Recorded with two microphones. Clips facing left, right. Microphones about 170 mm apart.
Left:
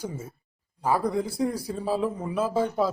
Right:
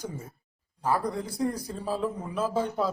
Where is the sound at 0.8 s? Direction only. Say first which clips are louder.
Left 3 dB; 10° left (ahead or behind).